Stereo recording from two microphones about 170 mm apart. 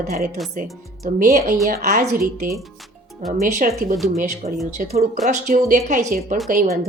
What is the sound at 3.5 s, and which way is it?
A woman's voice, 55° right (ahead or behind).